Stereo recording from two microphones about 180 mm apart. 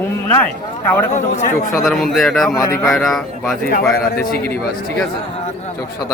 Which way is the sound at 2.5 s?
15° left (ahead or behind).